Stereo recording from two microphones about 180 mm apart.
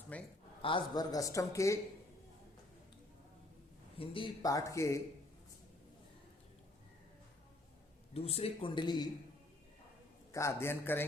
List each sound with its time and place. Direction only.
0.1 s a man's voice: 10° left (ahead or behind)
0.6 s a man's voice: 25° left (ahead or behind)
3.9 s a man's voice: 30° left (ahead or behind)
8.1 s a man's voice: 35° left (ahead or behind)
10.3 s a man's voice: 15° left (ahead or behind)